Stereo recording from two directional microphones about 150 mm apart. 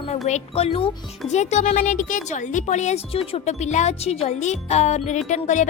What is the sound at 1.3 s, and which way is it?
A woman's voice, 50° left (ahead or behind).